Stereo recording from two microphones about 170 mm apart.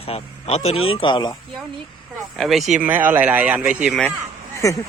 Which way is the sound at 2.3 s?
Centre (ahead or behind).